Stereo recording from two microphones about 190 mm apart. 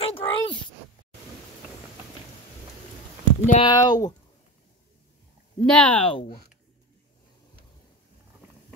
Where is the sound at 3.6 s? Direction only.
20° left (ahead or behind).